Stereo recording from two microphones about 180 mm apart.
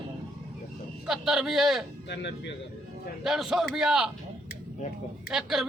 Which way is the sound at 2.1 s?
75° left (ahead or behind).